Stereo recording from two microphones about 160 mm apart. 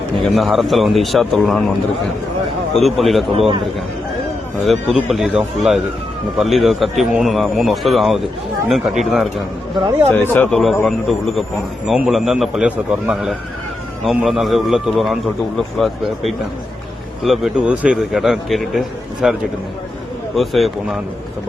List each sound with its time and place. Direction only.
0.2 s a man's voice: centre (ahead or behind)
2.7 s a man's voice: centre (ahead or behind)
3.3 s a man's voice: 40° right (ahead or behind)
4.6 s a man's voice: centre (ahead or behind)
10.2 s speech: 10° left (ahead or behind)
10.5 s a man's voice: centre (ahead or behind)
11.9 s a man's voice: centre (ahead or behind)